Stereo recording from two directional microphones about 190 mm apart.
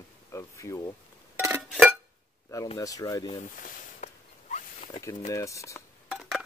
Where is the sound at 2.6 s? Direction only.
20° left (ahead or behind).